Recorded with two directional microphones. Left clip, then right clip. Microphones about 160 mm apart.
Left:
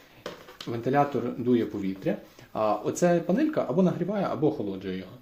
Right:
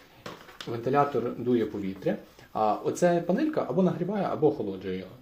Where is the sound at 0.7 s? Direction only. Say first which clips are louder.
Even; 35° left (ahead or behind).